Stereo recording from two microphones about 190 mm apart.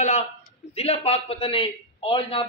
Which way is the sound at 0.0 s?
35° left (ahead or behind).